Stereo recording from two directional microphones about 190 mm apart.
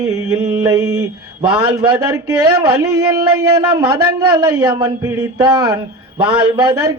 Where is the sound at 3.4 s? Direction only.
20° right (ahead or behind).